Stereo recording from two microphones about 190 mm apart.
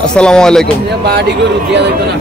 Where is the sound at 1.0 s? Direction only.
60° right (ahead or behind).